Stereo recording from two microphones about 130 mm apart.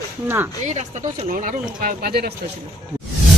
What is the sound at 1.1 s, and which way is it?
Speech, 75° right (ahead or behind).